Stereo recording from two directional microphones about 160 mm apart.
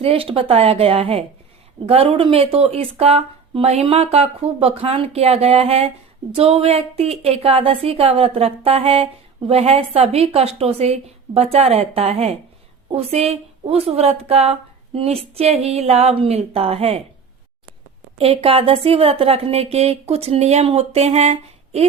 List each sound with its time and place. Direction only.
0.0 s a woman's voice: 35° right (ahead or behind)
18.2 s a woman's voice: 35° right (ahead or behind)